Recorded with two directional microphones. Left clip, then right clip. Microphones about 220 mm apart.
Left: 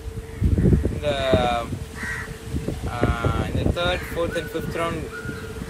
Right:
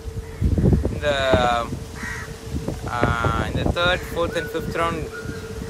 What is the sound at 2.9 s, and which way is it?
Speech, 5° right (ahead or behind).